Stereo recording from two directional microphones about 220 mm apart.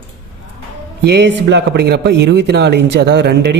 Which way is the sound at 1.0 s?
50° right (ahead or behind).